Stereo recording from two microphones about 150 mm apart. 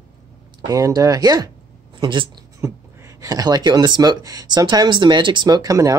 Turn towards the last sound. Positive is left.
turn(degrees=-20)  # may be behind; listen again after turning